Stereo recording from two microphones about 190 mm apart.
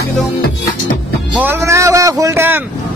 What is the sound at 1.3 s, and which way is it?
A man's voice, 10° right (ahead or behind).